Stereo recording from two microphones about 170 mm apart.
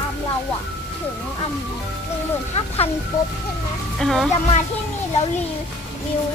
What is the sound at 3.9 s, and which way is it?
Speech, centre (ahead or behind).